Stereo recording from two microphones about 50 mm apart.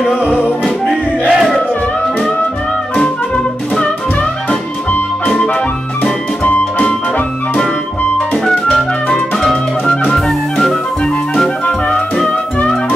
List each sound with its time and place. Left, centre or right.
0.8 s music: centre
3.8 s music: left
6.4 s music: left
8.7 s music: centre